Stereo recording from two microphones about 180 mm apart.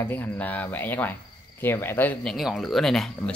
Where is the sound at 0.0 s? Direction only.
10° left (ahead or behind).